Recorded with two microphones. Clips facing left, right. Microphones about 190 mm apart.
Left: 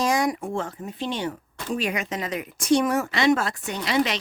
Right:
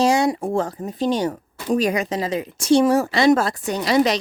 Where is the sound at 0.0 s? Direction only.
30° right (ahead or behind).